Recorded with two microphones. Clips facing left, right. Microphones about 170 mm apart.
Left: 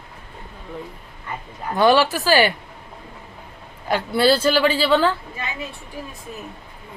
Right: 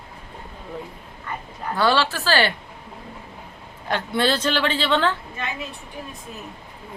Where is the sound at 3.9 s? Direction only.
10° left (ahead or behind).